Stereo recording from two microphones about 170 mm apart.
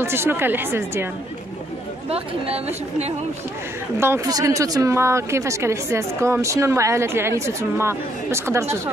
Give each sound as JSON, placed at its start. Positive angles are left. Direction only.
{"t": 0.0, "sound": "a woman's voice", "side_deg": -15}
{"t": 2.0, "sound": "speech", "side_deg": -35}
{"t": 4.0, "sound": "a woman's voice", "side_deg": -15}